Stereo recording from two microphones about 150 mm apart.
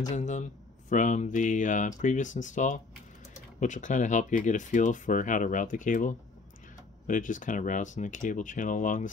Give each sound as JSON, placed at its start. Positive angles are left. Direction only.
{"t": 0.1, "sound": "speech", "side_deg": 55}